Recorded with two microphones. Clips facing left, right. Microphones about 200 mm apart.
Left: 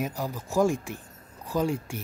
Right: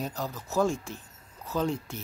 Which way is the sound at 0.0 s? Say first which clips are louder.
Left 3 dB; 10° left (ahead or behind).